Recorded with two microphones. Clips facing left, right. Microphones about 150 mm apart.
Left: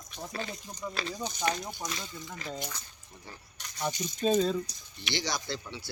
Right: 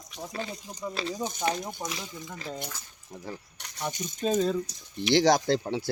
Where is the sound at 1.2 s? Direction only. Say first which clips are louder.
Right 4 dB; 50° right (ahead or behind).